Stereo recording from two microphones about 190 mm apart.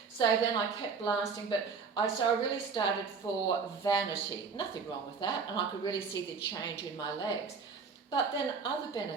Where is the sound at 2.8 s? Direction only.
25° left (ahead or behind).